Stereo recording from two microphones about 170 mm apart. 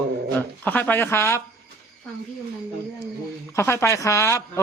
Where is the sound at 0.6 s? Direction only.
10° left (ahead or behind).